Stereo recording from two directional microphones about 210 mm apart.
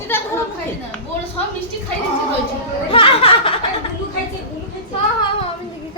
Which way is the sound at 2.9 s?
25° left (ahead or behind).